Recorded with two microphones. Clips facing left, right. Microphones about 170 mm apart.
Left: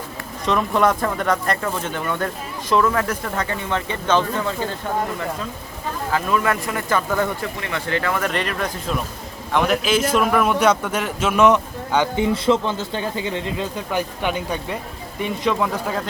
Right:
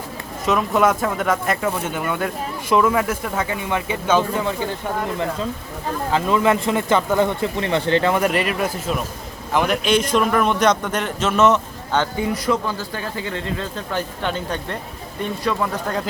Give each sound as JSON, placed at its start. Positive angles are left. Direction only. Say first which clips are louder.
{"t": 0.4, "sound": "speech", "louder": "right 1 dB", "side_deg": -5}
{"t": 6.1, "sound": "speech", "louder": "right 3 dB", "side_deg": -20}
{"t": 8.2, "sound": "a man's voice", "louder": "right 4 dB", "side_deg": -10}
{"t": 12.1, "sound": "speech", "louder": "left 3 dB", "side_deg": 25}